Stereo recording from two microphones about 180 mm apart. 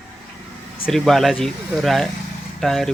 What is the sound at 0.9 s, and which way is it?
Speech, centre (ahead or behind).